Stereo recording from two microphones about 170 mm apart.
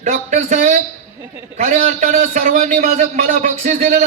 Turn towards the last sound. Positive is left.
turn(degrees=-55)  # may be behind; listen again after turning